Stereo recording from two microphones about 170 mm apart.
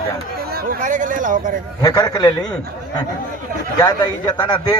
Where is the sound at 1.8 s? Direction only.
25° left (ahead or behind).